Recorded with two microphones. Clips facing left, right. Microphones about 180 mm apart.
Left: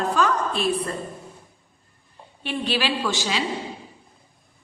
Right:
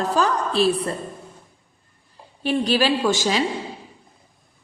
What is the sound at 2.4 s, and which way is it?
Speech, 40° right (ahead or behind).